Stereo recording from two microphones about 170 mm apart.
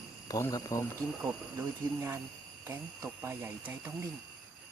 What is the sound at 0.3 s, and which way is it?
Speech, 20° left (ahead or behind).